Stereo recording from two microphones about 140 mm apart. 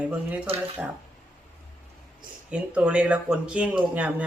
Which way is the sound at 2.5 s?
10° right (ahead or behind).